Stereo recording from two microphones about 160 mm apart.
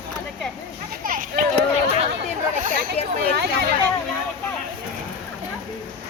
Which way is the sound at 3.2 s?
85° right.